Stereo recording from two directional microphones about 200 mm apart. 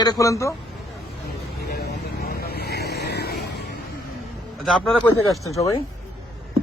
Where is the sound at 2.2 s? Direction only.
50° left (ahead or behind).